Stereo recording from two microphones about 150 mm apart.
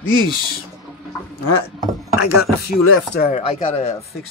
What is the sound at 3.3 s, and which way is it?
Speech, 40° left (ahead or behind).